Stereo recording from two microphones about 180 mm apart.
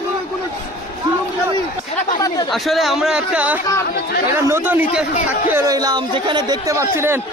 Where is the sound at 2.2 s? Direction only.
20° left (ahead or behind).